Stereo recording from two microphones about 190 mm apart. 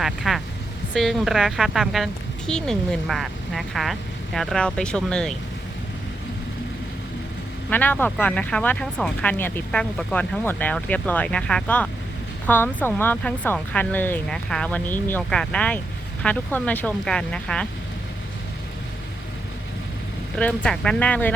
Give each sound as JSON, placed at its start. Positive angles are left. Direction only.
{"t": 0.0, "sound": "speech", "side_deg": 0}
{"t": 7.7, "sound": "speech", "side_deg": 10}
{"t": 20.3, "sound": "speech", "side_deg": 5}